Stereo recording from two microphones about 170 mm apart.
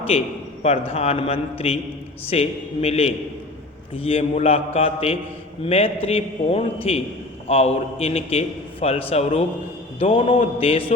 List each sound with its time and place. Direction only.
0.6 s a man's voice: 35° left (ahead or behind)